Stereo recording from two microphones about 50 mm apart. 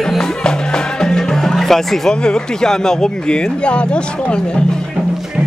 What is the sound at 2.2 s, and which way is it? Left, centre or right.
Speech, centre.